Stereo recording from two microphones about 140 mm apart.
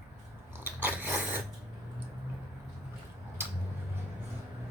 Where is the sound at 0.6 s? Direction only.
15° right (ahead or behind).